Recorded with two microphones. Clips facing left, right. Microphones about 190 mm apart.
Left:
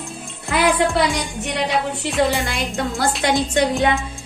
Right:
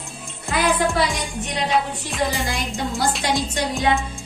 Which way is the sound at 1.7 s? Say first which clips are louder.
Left 1 dB; centre (ahead or behind).